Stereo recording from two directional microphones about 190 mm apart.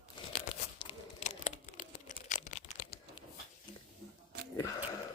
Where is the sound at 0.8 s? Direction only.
35° left (ahead or behind).